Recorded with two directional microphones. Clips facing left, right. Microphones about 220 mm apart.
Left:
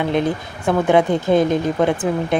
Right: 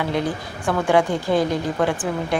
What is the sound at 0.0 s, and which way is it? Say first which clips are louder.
Speech: left 4 dB; 20° left (ahead or behind).